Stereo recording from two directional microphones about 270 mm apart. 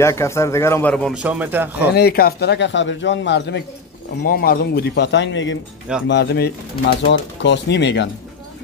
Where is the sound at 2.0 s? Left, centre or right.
Left.